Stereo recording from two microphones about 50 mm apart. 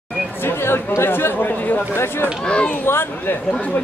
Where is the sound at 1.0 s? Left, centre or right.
Left.